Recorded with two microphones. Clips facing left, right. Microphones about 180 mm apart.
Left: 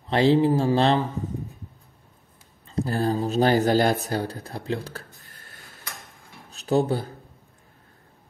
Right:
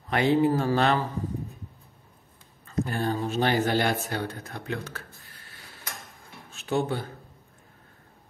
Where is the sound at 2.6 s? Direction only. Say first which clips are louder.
Left 3 dB; 35° left (ahead or behind).